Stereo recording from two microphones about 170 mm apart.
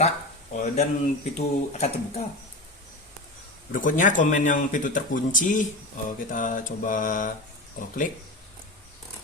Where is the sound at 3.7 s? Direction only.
50° left (ahead or behind).